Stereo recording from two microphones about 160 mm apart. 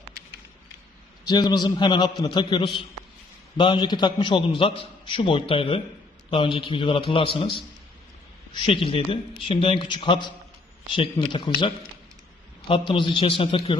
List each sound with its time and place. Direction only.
1.2 s a man's voice: 25° left (ahead or behind)
8.5 s a man's voice: 35° left (ahead or behind)
12.6 s a man's voice: 30° left (ahead or behind)